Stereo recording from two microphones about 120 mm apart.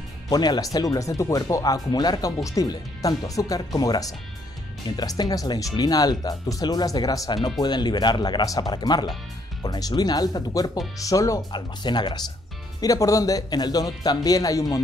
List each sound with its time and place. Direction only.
0.3 s speech: 35° left (ahead or behind)
11.5 s speech: 40° left (ahead or behind)